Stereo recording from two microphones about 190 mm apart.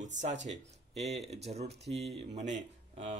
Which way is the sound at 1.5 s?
35° right (ahead or behind).